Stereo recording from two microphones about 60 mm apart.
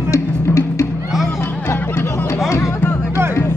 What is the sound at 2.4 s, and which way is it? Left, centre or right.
Music, left.